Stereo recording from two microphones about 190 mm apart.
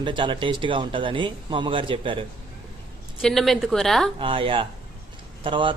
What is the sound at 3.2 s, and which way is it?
Speech, centre (ahead or behind).